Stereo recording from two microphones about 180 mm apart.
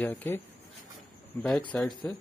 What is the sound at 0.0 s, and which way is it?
Speech, 10° left (ahead or behind).